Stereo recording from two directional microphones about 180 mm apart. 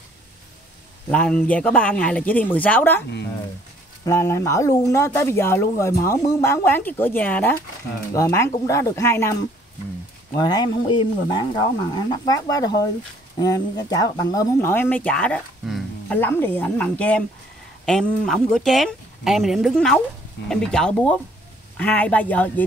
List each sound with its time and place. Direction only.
1.1 s speech: 5° left (ahead or behind)
4.0 s speech: 15° left (ahead or behind)